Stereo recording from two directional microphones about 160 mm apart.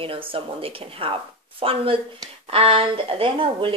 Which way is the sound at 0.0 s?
35° right (ahead or behind).